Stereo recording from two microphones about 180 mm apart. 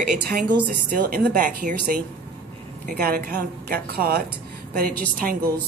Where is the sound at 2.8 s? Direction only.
55° right (ahead or behind).